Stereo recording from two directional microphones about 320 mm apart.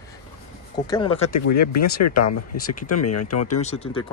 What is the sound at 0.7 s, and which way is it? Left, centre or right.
Speech, centre.